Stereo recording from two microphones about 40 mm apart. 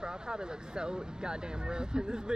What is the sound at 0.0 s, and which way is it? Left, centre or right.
Speech, right.